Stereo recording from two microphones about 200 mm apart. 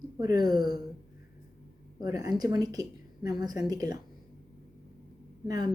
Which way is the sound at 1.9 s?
20° right (ahead or behind).